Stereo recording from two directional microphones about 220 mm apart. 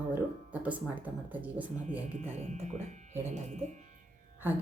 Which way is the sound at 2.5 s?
30° right (ahead or behind).